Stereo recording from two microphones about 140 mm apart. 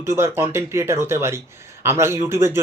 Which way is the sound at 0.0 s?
20° right (ahead or behind).